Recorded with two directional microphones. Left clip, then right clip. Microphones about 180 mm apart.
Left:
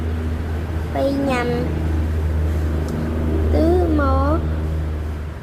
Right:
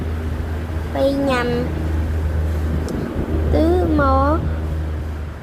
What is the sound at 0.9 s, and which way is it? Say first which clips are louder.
Speech: right 2 dB; 15° right (ahead or behind).